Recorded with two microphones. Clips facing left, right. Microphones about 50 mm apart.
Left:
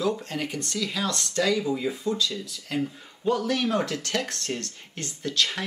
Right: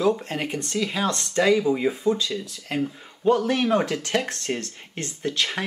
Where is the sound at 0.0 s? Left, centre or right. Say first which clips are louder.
Right 4 dB; right.